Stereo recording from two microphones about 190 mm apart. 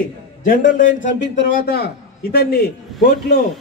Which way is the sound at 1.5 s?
55° left (ahead or behind).